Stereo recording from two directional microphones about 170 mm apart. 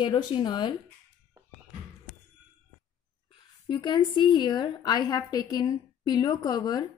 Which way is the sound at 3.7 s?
25° left (ahead or behind).